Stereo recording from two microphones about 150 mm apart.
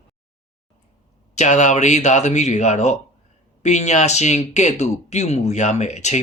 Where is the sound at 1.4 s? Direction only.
50° left (ahead or behind).